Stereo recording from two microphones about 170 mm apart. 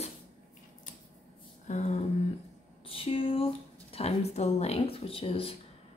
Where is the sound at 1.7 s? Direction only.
45° left (ahead or behind).